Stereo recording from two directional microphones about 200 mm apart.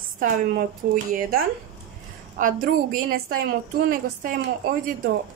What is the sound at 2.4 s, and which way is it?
A woman's voice, 45° right (ahead or behind).